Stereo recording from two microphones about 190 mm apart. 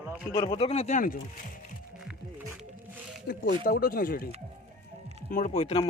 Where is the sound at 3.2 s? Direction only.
55° left (ahead or behind).